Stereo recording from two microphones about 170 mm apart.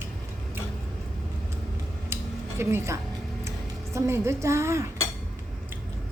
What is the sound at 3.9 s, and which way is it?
Speech, 15° right (ahead or behind).